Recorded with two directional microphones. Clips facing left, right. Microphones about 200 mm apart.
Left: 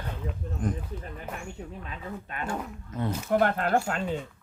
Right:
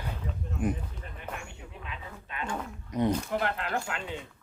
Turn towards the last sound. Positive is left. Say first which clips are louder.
# left 7 dB
turn(degrees=40)  # may be behind; listen again after turning